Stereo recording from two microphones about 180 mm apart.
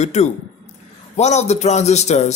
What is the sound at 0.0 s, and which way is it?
A man's voice, 40° left (ahead or behind).